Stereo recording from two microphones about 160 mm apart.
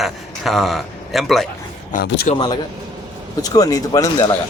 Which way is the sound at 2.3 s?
30° left (ahead or behind).